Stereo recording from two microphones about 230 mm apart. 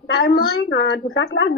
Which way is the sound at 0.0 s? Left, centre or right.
Left.